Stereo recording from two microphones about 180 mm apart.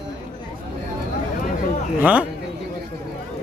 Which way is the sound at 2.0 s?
5° right (ahead or behind).